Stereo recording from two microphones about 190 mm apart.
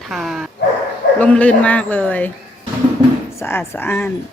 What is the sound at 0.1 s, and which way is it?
Dog, centre (ahead or behind).